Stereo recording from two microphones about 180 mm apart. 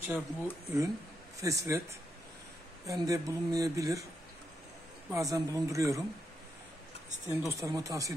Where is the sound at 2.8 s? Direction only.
20° right (ahead or behind).